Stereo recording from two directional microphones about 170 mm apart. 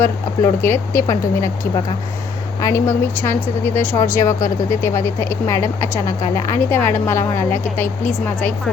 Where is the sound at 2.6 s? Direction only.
15° left (ahead or behind).